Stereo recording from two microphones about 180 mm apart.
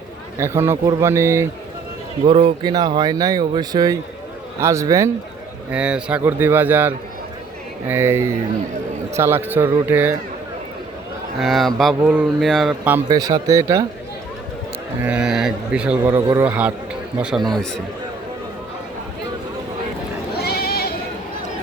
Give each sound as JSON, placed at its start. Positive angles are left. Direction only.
{"t": 0.3, "sound": "speech", "side_deg": -15}
{"t": 2.2, "sound": "speech", "side_deg": -25}
{"t": 5.7, "sound": "speech", "side_deg": -5}
{"t": 11.3, "sound": "speech", "side_deg": 0}
{"t": 13.1, "sound": "speech", "side_deg": -20}
{"t": 15.0, "sound": "speech", "side_deg": -5}
{"t": 20.3, "sound": "sheep", "side_deg": 60}